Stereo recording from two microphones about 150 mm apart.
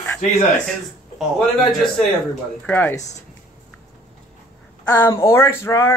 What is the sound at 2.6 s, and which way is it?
Speech, 10° left (ahead or behind).